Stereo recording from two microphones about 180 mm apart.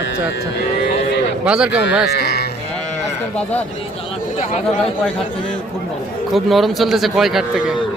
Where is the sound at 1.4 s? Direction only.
5° right (ahead or behind).